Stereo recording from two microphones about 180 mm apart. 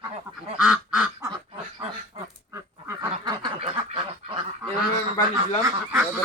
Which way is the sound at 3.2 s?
25° right (ahead or behind).